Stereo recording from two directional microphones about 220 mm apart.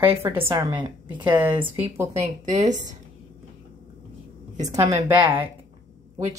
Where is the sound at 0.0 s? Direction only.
10° right (ahead or behind).